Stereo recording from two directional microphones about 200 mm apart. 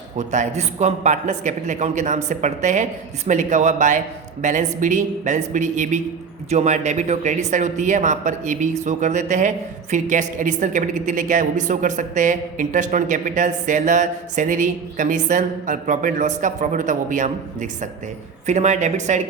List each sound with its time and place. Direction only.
0.2 s speech: 35° right (ahead or behind)